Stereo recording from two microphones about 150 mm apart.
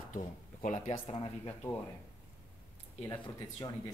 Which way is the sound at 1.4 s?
15° left (ahead or behind).